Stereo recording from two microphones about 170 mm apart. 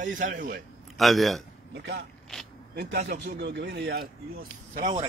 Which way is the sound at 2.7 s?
75° right (ahead or behind).